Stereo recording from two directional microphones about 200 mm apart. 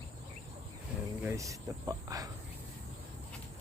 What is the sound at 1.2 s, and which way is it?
Speech, 15° right (ahead or behind).